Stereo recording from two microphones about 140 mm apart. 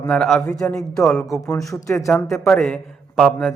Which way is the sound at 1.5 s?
25° left (ahead or behind).